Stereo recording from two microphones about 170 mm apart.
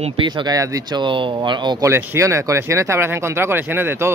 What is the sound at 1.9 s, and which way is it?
Speech, 15° right (ahead or behind).